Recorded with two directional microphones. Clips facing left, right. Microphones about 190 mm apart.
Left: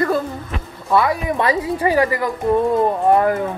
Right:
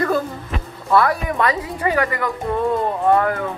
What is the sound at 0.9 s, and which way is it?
Speech, 20° left (ahead or behind).